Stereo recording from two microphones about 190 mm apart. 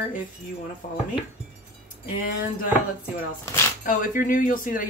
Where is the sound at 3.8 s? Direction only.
45° left (ahead or behind).